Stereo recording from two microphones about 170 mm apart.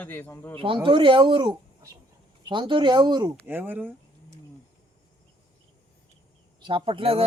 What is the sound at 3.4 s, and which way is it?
Speech, 10° right (ahead or behind).